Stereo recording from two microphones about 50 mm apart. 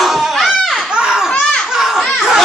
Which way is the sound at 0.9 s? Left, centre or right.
Centre.